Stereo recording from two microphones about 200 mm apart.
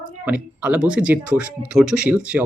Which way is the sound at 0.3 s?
5° right (ahead or behind).